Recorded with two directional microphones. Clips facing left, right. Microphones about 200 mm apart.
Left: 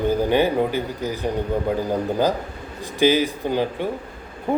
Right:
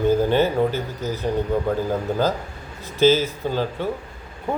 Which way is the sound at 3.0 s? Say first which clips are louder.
Right 1 dB; 15° left (ahead or behind).